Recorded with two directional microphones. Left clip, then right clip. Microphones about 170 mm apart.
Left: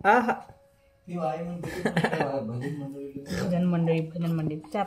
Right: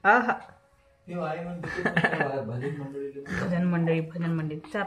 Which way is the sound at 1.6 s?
15° left (ahead or behind).